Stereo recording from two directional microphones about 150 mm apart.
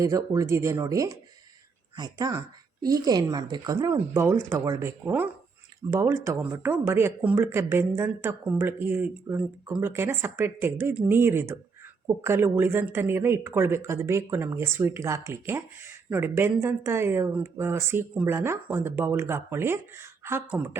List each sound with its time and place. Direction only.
0.0 s speech: 20° right (ahead or behind)